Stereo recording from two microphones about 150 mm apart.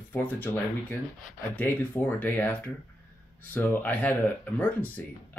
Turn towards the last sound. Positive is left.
turn(degrees=10)  # may be behind; listen again after turning